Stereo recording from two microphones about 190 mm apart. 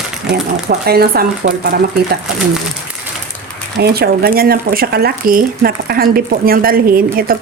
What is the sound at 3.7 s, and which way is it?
Speech, 55° right (ahead or behind).